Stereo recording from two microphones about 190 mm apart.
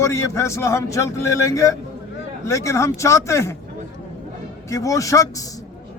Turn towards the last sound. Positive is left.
turn(degrees=15)  # may be behind; listen again after turning